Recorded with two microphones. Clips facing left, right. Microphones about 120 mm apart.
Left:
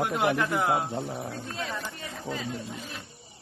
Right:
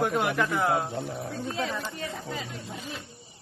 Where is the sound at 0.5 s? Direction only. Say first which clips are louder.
Even; 15° left (ahead or behind).